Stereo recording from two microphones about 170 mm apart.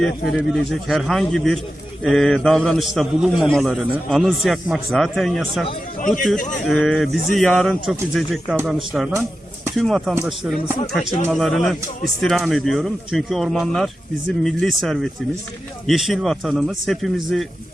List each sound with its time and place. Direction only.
0.0 s a man's voice: centre (ahead or behind)
6.3 s speech: 50° left (ahead or behind)
6.7 s a man's voice: centre (ahead or behind)
11.3 s a man's voice: centre (ahead or behind)